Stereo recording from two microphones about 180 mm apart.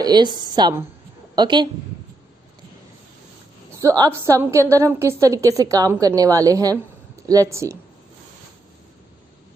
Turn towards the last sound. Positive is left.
turn(degrees=-15)  # may be behind; listen again after turning